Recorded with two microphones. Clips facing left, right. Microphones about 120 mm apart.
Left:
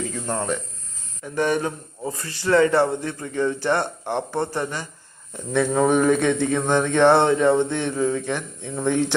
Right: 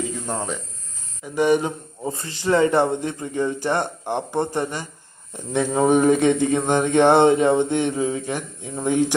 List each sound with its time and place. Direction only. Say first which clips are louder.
0.3 s a man's voice: left 2 dB; 10° right (ahead or behind)